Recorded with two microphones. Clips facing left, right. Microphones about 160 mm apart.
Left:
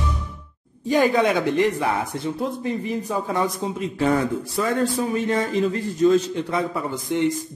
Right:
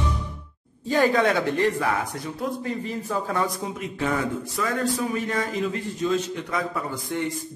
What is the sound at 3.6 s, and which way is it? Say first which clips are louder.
Speech: left 5 dB; 30° left (ahead or behind).